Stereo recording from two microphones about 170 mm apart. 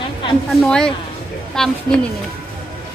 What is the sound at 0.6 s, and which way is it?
A woman's voice, 5° left (ahead or behind).